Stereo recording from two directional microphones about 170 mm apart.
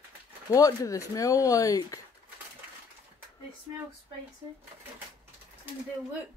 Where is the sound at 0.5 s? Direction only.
20° left (ahead or behind).